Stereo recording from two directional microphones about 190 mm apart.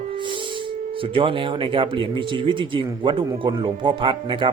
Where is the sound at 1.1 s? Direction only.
25° right (ahead or behind).